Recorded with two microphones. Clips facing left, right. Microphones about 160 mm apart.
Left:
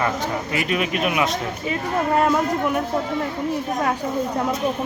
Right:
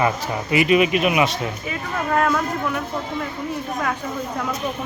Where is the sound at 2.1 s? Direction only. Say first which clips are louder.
Even; 20° left (ahead or behind).